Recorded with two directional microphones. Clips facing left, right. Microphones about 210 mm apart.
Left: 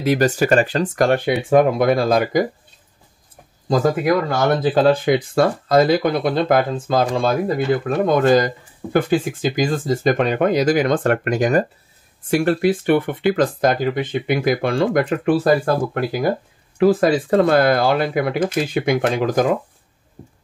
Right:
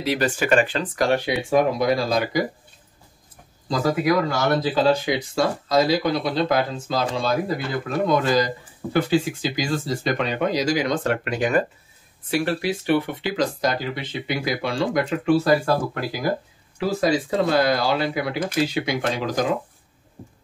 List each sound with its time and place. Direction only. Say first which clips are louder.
0.0 s speech: left 6 dB; 45° left (ahead or behind)
3.6 s speech: left 4 dB; 50° left (ahead or behind)